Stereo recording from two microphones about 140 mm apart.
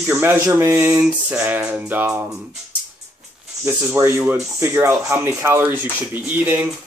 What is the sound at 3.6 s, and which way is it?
Speech, 20° right (ahead or behind).